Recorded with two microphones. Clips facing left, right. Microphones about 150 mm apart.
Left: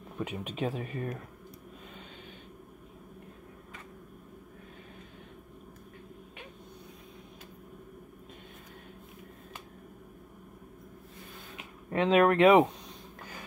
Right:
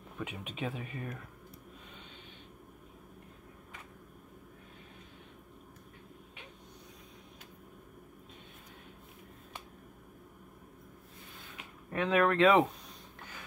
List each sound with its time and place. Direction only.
0.2 s speech: 40° left (ahead or behind)
11.9 s speech: 25° left (ahead or behind)